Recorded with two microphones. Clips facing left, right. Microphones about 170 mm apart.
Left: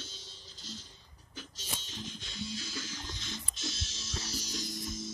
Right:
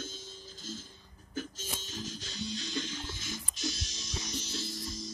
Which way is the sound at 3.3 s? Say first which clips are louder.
Right 5 dB; 25° left (ahead or behind).